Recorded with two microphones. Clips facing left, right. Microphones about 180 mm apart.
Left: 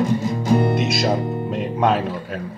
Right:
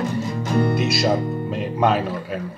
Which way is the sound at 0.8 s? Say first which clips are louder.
Even; centre (ahead or behind).